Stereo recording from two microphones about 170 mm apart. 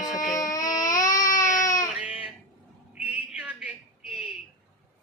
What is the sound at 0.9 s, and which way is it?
Baby cry, 20° left (ahead or behind).